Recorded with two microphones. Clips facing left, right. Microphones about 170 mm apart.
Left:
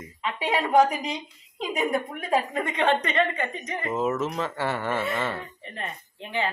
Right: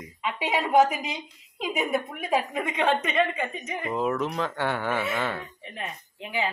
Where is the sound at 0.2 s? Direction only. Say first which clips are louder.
Left 1 dB; 10° right (ahead or behind).